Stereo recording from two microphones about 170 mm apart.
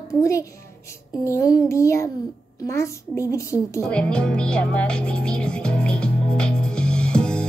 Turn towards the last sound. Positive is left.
turn(degrees=5)  # may be behind; listen again after turning